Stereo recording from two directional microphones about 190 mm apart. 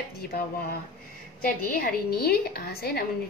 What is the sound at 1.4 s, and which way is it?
A woman's voice, 50° left (ahead or behind).